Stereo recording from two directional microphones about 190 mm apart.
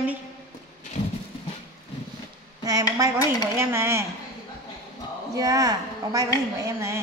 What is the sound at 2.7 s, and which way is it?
A woman's voice, 15° right (ahead or behind).